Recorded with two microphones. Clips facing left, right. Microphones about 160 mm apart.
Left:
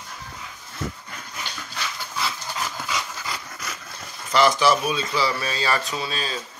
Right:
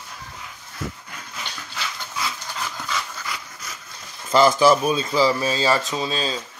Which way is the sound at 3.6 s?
70° left (ahead or behind).